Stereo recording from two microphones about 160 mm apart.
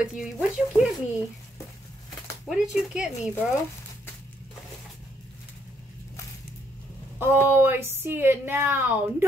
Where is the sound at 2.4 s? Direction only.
5° right (ahead or behind).